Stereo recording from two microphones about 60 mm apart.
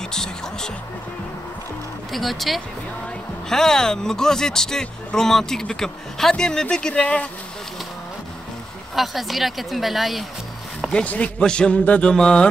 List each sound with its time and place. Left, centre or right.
0.1 s music: centre
2.1 s speech: centre
8.9 s speech: centre
10.9 s speech: centre
11.8 s mantra: left
12.1 s speech: centre